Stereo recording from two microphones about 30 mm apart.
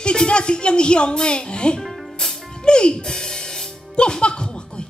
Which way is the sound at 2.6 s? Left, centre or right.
Left.